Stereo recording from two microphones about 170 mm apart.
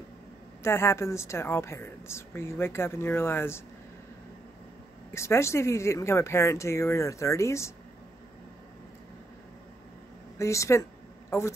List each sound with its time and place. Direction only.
0.6 s a woman's voice: 15° left (ahead or behind)
5.1 s a woman's voice: 15° left (ahead or behind)
10.3 s a sound: 15° left (ahead or behind)